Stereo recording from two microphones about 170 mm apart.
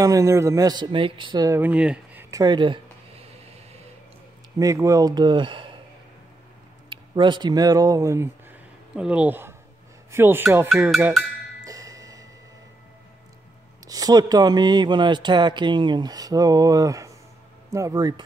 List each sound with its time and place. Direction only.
0.0 s speech: 20° right (ahead or behind)
1.6 s speech: 5° right (ahead or behind)
2.3 s a sound: 25° right (ahead or behind)
4.6 s speech: 20° right (ahead or behind)
6.9 s speech: 25° right (ahead or behind)
8.9 s speech: 5° right (ahead or behind)
10.1 s music: 15° right (ahead or behind)
10.7 s cowbell: centre (ahead or behind)
11.6 s music: 20° right (ahead or behind)
13.8 s speech: 20° right (ahead or behind)